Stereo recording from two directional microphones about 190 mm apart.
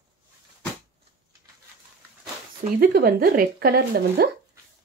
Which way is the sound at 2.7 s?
55° right (ahead or behind).